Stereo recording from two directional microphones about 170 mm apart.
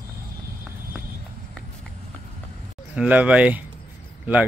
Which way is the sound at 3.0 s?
10° right (ahead or behind).